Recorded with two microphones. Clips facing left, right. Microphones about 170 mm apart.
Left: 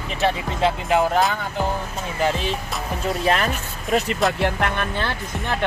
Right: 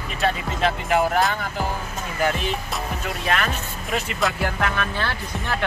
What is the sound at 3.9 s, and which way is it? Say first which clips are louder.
Speech: left 6 dB; 40° left (ahead or behind).